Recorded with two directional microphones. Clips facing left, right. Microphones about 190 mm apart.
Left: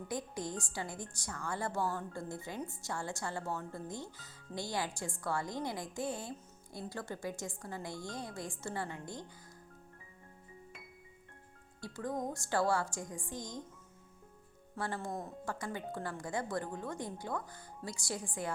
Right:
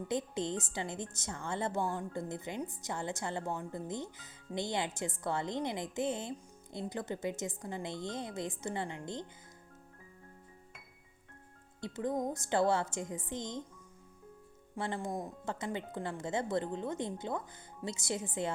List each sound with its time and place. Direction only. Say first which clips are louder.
0.1 s a woman's voice: right 4 dB; 25° right (ahead or behind)
11.8 s a woman's voice: right 4 dB; 20° right (ahead or behind)
14.8 s a woman's voice: right 2 dB; 20° right (ahead or behind)